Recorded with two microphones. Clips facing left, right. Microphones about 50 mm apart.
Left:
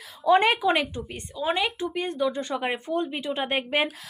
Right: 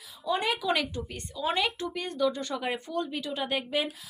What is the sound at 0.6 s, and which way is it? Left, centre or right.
Speech, left.